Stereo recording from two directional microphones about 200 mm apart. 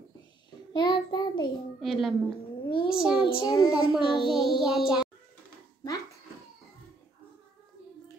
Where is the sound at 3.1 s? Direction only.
20° left (ahead or behind).